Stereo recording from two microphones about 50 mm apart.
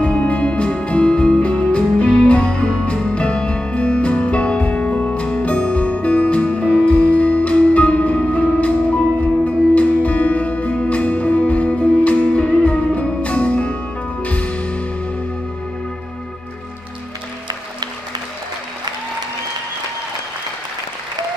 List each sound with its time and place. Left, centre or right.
0.0 s music: left